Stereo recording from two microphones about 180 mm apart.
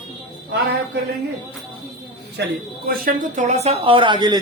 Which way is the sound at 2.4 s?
65° right (ahead or behind).